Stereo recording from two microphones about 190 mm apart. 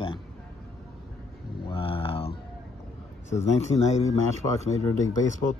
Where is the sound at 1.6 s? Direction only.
30° left (ahead or behind).